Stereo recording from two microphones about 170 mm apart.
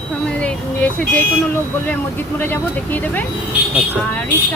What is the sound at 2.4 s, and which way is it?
Speech, 10° left (ahead or behind).